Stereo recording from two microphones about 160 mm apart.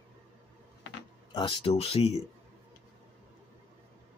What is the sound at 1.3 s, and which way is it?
Speech, 30° left (ahead or behind).